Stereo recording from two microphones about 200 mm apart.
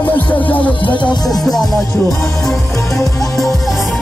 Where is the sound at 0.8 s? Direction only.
25° left (ahead or behind).